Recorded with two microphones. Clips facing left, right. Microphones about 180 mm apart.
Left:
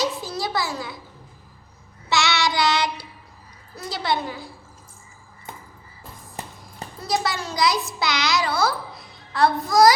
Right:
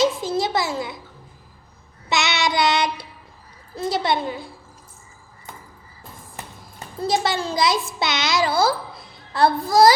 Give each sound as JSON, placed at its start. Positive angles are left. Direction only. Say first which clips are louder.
{"t": 0.0, "sound": "a sound", "louder": "right 6 dB", "side_deg": -25}
{"t": 2.0, "sound": "child singing", "louder": "even", "side_deg": -20}
{"t": 3.8, "sound": "a child's voice", "louder": "right 4 dB", "side_deg": -25}
{"t": 7.0, "sound": "a child's voice", "louder": "right 4 dB", "side_deg": -25}